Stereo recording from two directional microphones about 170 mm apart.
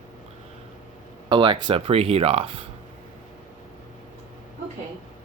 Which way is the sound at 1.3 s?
30° right (ahead or behind).